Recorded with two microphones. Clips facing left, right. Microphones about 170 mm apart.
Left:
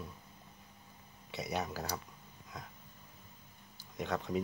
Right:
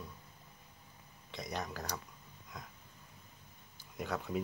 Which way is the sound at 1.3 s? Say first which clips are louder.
Left 3 dB; 5° left (ahead or behind).